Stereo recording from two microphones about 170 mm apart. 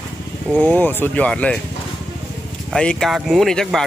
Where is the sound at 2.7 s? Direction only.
5° left (ahead or behind).